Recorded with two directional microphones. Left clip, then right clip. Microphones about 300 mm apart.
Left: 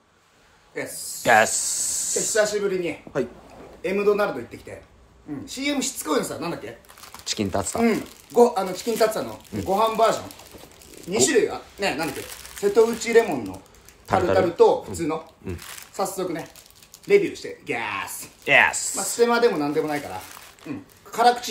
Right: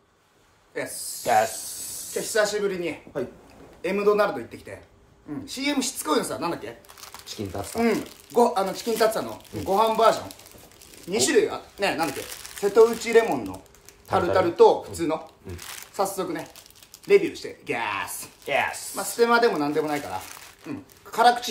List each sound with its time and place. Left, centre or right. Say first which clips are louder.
0.7 s speech: even; centre
1.2 s speech: left 4 dB; left
2.3 s speech: left 1 dB; centre
7.4 s speech: left 6 dB; left
7.8 s speech: right 3 dB; centre
18.4 s speech: left 8 dB; left
18.9 s speech: right 1 dB; centre